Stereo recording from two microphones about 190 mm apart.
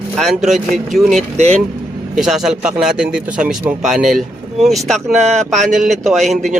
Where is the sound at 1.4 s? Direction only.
35° right (ahead or behind).